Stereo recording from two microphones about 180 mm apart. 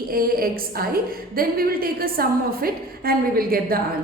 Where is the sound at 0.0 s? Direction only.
55° right (ahead or behind).